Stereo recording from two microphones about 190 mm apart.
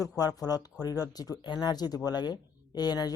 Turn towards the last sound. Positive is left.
turn(degrees=20)  # may be behind; listen again after turning